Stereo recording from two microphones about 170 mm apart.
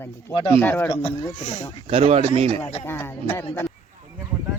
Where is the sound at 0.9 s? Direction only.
35° left (ahead or behind).